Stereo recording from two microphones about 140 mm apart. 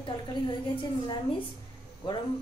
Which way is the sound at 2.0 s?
35° left (ahead or behind).